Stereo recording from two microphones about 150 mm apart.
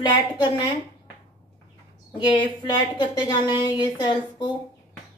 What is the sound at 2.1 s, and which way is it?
A woman's voice, 30° left (ahead or behind).